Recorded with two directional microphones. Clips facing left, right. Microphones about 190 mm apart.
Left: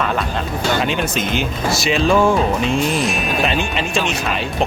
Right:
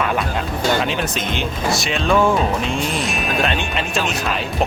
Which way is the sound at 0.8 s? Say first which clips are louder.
Left 2 dB; centre (ahead or behind).